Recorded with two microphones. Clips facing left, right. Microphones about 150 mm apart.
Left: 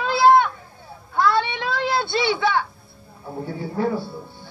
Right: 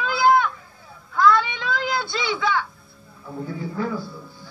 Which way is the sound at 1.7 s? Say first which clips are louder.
Left 2 dB; 30° left (ahead or behind).